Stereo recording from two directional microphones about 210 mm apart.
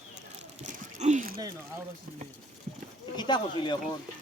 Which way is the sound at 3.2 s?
20° left (ahead or behind).